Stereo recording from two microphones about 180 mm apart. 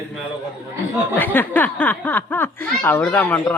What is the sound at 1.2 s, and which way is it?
Speech, 10° left (ahead or behind).